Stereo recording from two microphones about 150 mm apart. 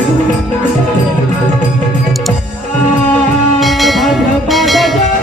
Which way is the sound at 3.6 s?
Centre (ahead or behind).